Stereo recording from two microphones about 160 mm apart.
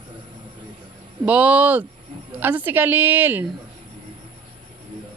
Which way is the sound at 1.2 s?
10° right (ahead or behind).